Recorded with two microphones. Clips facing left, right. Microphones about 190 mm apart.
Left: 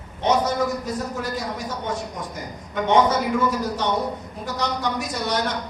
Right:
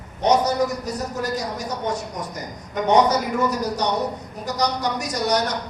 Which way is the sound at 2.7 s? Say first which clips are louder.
Right 1 dB; 40° right (ahead or behind).